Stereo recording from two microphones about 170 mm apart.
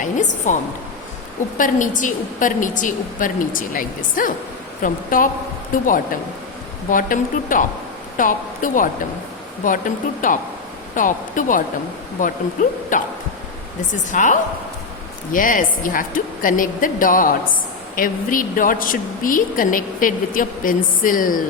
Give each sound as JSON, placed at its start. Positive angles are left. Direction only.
{"t": 0.0, "sound": "a sound", "side_deg": 45}
{"t": 1.5, "sound": "a woman's voice", "side_deg": 50}
{"t": 14.1, "sound": "a woman's voice", "side_deg": 45}